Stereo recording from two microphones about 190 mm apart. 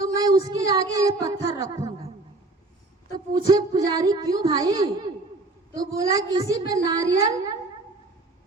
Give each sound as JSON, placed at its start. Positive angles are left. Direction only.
{"t": 0.0, "sound": "child singing", "side_deg": -20}
{"t": 0.4, "sound": "speech", "side_deg": -20}
{"t": 3.3, "sound": "a woman's voice", "side_deg": -20}